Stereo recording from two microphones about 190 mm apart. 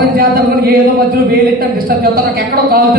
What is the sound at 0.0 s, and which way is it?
A man's voice, 50° right (ahead or behind).